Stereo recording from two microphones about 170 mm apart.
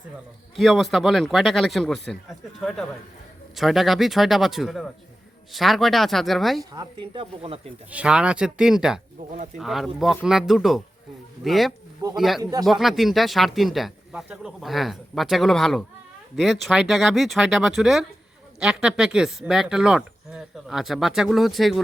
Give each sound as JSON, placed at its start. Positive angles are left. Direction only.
{"t": 0.5, "sound": "speech", "side_deg": 0}
{"t": 6.7, "sound": "speech", "side_deg": -30}
{"t": 7.9, "sound": "speech", "side_deg": -5}
{"t": 12.4, "sound": "speech", "side_deg": -20}
{"t": 12.6, "sound": "speech", "side_deg": 0}